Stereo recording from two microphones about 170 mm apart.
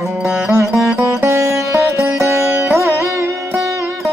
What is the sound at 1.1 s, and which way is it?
Music, 15° right (ahead or behind).